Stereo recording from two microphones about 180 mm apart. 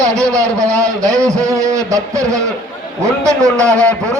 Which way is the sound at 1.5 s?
15° right (ahead or behind).